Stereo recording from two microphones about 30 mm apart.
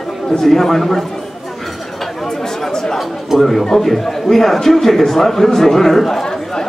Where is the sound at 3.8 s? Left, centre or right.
Centre.